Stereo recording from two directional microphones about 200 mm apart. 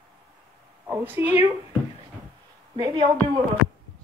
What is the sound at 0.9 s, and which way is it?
Speech, 10° right (ahead or behind).